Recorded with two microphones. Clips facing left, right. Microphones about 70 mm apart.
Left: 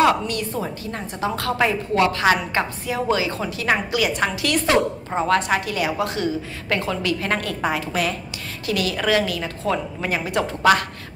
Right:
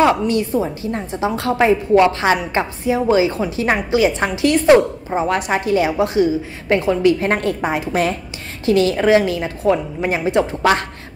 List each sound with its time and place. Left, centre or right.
0.0 s a woman's voice: right